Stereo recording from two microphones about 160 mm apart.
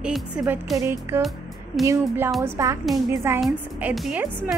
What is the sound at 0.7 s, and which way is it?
Speech, 15° right (ahead or behind).